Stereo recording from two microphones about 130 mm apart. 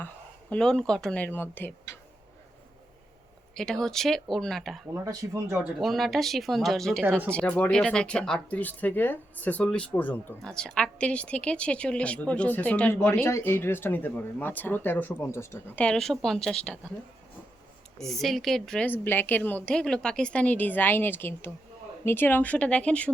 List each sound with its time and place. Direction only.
0.5 s speech: 5° left (ahead or behind)
3.5 s speech: 5° left (ahead or behind)
5.0 s speech: 25° right (ahead or behind)
5.5 s speech: centre (ahead or behind); by 15.8 s 20° left (ahead or behind)
15.8 s speech: 5° left (ahead or behind)
17.9 s speech: centre (ahead or behind)